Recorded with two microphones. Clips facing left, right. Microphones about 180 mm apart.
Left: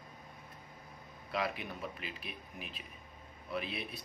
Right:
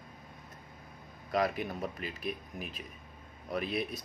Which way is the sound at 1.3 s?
45° right (ahead or behind).